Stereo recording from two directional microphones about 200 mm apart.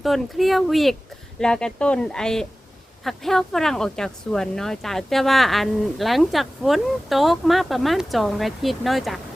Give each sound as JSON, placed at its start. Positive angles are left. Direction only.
{"t": 0.0, "sound": "speech", "side_deg": 0}